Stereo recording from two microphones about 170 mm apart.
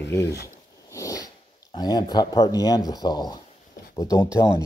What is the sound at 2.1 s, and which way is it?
Speech, 25° left (ahead or behind).